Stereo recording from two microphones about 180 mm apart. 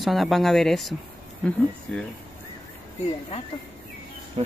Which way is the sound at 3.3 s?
35° left (ahead or behind).